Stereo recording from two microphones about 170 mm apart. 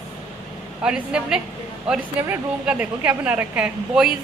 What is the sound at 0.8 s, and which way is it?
A woman's voice, 5° right (ahead or behind).